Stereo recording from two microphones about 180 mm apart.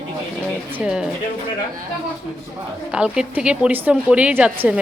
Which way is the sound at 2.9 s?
5° right (ahead or behind).